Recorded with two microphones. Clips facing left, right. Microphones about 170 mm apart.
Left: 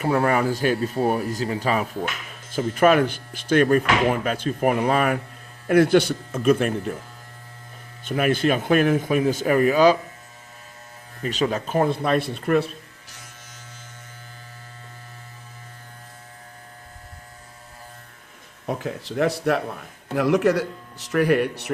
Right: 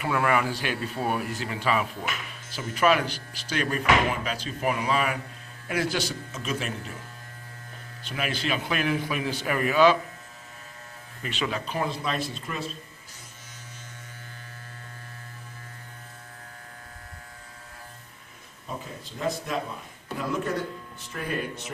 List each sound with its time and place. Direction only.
0.0 s speech: 40° left (ahead or behind)
2.5 s speech: 50° left (ahead or behind)
8.0 s speech: 50° left (ahead or behind)
11.2 s speech: 40° left (ahead or behind); by 12.7 s 65° left (ahead or behind)
18.6 s speech: 75° left (ahead or behind)